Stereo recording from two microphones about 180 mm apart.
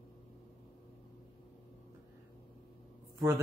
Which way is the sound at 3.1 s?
15° right (ahead or behind).